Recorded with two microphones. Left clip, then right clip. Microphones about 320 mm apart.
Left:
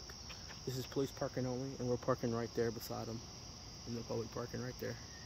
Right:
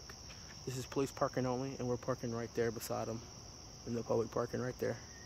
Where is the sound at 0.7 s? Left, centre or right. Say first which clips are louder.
Right 2 dB; centre.